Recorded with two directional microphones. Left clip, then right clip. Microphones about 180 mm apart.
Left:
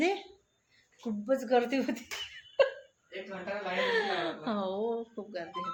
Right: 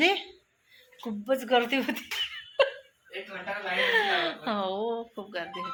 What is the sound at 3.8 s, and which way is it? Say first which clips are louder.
Speech: right 6 dB; centre (ahead or behind).